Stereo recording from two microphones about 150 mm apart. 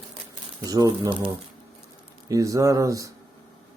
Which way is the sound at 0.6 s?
25° right (ahead or behind).